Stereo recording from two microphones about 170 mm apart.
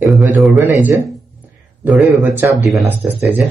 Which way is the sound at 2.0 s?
Centre (ahead or behind).